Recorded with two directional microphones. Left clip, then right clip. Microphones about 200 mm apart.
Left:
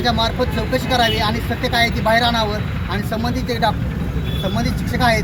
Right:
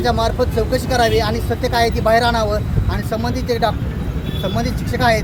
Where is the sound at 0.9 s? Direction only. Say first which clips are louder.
Right 2 dB; 30° right (ahead or behind).